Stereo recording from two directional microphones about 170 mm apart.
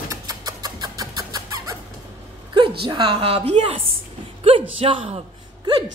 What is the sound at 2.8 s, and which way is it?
Speech, 25° right (ahead or behind).